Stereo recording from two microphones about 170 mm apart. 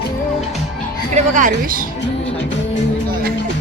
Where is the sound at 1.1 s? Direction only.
50° right (ahead or behind).